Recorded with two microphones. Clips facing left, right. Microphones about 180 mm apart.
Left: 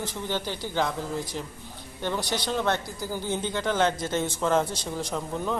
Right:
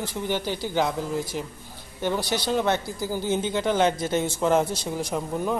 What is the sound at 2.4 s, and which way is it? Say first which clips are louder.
A man's voice: right 3 dB; 15° right (ahead or behind).